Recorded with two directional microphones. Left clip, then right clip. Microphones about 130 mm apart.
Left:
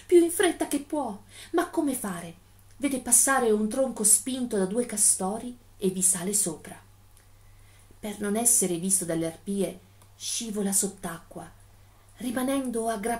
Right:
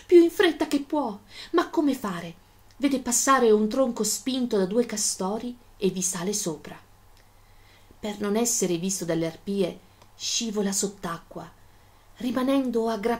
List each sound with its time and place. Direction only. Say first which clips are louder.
0.1 s a sound: right 3 dB; 20° right (ahead or behind)
2.8 s a woman's voice: right 2 dB; 20° right (ahead or behind)
8.0 s a woman's voice: right 3 dB; 20° right (ahead or behind)